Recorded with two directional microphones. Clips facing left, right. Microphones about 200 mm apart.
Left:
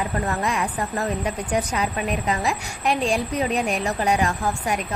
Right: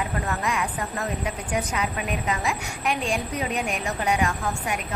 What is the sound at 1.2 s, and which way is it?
A woman's voice, 35° left (ahead or behind).